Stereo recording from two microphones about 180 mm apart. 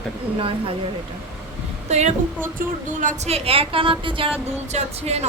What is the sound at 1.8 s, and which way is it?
A woman's voice, 40° right (ahead or behind).